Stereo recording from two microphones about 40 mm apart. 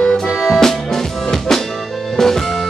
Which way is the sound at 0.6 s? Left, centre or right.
Centre.